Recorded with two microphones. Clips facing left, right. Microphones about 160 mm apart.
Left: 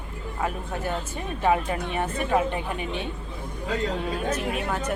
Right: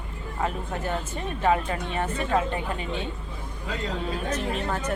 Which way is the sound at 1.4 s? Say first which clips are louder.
Left 1 dB; 15° left (ahead or behind).